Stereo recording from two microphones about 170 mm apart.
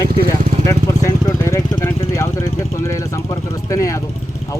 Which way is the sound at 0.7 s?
15° left (ahead or behind).